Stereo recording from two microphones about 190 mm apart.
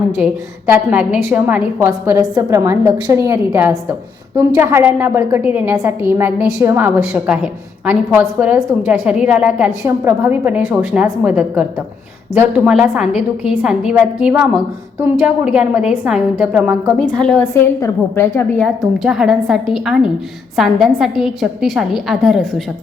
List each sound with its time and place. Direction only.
0.2 s a woman's voice: 5° right (ahead or behind)
17.0 s a woman's voice: 5° left (ahead or behind)
18.9 s a woman's voice: centre (ahead or behind)